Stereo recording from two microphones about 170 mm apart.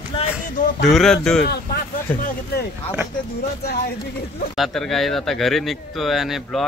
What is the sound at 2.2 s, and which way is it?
Speech, 65° left (ahead or behind).